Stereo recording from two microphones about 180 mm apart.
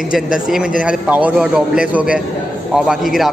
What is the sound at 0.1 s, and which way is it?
A man's voice, 5° right (ahead or behind).